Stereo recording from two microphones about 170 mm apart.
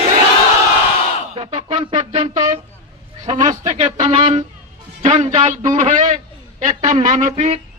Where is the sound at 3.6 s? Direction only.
45° right (ahead or behind).